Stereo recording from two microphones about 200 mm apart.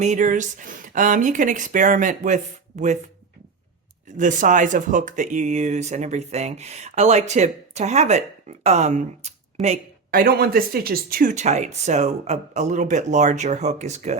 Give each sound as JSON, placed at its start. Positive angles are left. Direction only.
{"t": 0.0, "sound": "speech", "side_deg": -40}
{"t": 4.2, "sound": "speech", "side_deg": -40}